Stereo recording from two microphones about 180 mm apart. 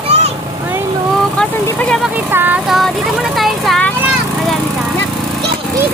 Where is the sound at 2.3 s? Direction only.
10° right (ahead or behind).